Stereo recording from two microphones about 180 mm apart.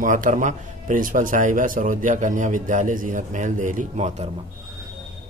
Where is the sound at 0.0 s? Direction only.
45° right (ahead or behind).